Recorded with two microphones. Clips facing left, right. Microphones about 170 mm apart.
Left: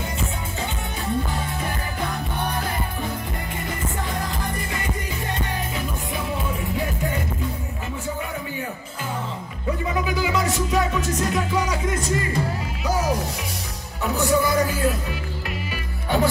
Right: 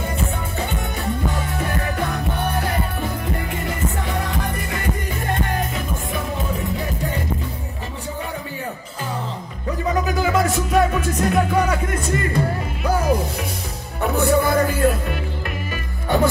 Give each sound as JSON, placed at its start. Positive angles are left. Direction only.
{"t": 4.1, "sound": "music", "side_deg": -65}
{"t": 10.0, "sound": "music", "side_deg": -50}
{"t": 14.1, "sound": "music", "side_deg": -55}